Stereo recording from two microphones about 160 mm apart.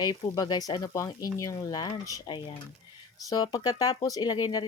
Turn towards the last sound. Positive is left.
turn(degrees=25)  # may be behind; listen again after turning